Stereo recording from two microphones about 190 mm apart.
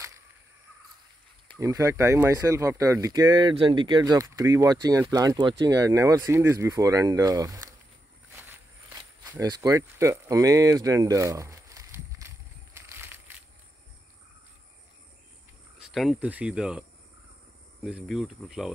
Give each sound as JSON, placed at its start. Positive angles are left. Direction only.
{"t": 1.6, "sound": "speech", "side_deg": -15}
{"t": 9.3, "sound": "speech", "side_deg": -15}
{"t": 12.7, "sound": "crushing", "side_deg": -10}
{"t": 15.8, "sound": "speech", "side_deg": 0}
{"t": 17.8, "sound": "speech", "side_deg": 0}